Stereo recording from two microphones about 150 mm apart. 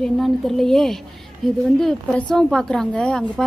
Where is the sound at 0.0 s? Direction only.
Centre (ahead or behind).